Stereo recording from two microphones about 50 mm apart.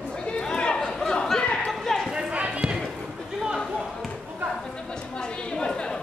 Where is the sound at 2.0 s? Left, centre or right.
Centre.